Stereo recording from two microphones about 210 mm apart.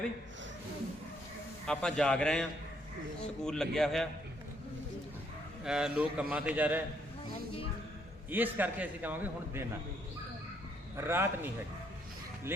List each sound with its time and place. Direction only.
1.6 s a man's voice: 5° left (ahead or behind)
5.6 s a man's voice: 5° right (ahead or behind)
8.3 s a man's voice: 10° right (ahead or behind)
10.9 s a man's voice: 10° right (ahead or behind)